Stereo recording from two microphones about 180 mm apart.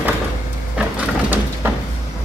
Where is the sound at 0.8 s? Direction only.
10° right (ahead or behind).